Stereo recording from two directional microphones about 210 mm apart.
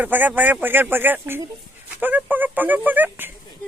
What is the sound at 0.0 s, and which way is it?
Speech, 10° right (ahead or behind).